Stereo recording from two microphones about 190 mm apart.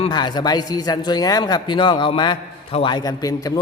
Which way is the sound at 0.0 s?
25° left (ahead or behind).